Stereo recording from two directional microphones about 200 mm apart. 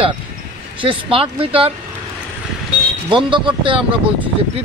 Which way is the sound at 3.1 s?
25° right (ahead or behind).